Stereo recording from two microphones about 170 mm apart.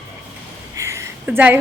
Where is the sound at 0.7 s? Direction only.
15° right (ahead or behind).